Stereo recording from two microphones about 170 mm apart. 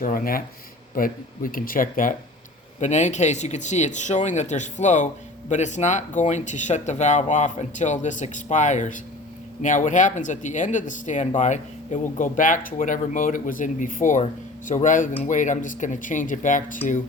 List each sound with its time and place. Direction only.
0.0 s speech: 55° left (ahead or behind)